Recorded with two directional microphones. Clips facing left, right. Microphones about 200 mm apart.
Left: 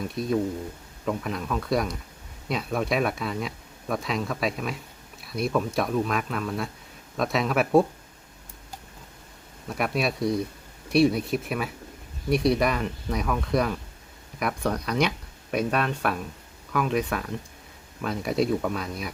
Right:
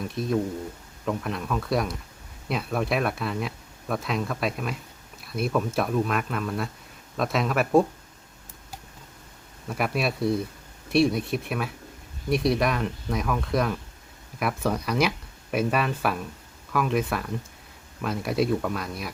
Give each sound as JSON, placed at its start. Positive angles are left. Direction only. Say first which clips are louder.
{"t": 0.1, "sound": "speech", "louder": "even", "side_deg": 0}
{"t": 9.6, "sound": "speech", "louder": "even", "side_deg": 0}